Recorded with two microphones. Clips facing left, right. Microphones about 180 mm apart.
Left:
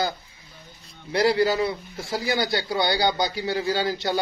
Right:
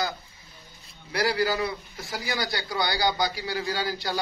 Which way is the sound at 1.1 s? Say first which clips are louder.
Left 5 dB; 25° left (ahead or behind).